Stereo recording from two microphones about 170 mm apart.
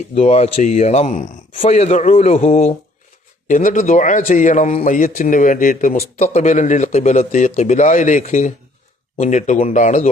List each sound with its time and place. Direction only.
0.1 s speech: 40° left (ahead or behind)
3.4 s speech: 50° left (ahead or behind)